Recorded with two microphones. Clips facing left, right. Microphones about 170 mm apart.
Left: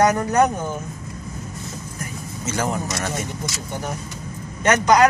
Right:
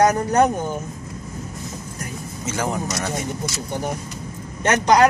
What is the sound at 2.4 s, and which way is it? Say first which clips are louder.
Speech: left 1 dB; 10° right (ahead or behind).